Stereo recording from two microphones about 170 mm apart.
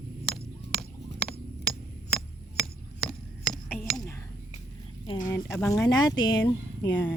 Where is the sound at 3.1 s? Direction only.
Centre (ahead or behind).